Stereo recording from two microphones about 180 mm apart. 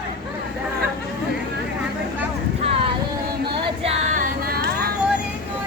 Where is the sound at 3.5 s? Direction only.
30° right (ahead or behind).